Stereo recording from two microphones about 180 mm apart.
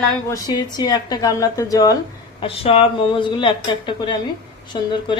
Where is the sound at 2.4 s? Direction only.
30° left (ahead or behind).